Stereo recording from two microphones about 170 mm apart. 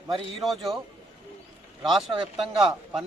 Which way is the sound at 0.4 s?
Centre (ahead or behind).